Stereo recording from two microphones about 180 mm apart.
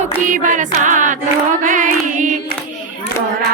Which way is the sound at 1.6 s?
45° right (ahead or behind).